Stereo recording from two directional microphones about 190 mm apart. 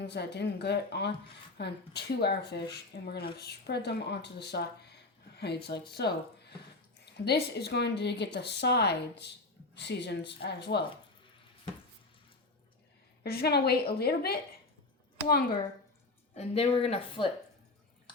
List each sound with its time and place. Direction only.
0.0 s speech: 60° left (ahead or behind)
2.9 s speech: 75° left (ahead or behind)
3.3 s speech: 60° left (ahead or behind)
13.2 s speech: 55° left (ahead or behind)
16.3 s speech: 35° left (ahead or behind)